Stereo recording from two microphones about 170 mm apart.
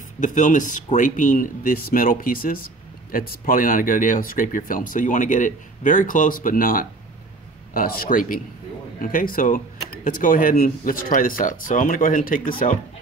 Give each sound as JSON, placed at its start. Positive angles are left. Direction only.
{"t": 0.2, "sound": "speech", "side_deg": 50}